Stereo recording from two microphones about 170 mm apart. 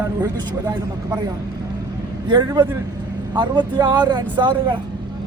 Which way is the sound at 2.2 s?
25° right (ahead or behind).